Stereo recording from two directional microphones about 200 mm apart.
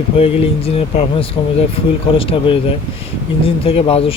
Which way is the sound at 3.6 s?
30° left (ahead or behind).